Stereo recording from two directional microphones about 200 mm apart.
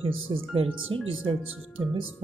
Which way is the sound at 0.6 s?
90° right.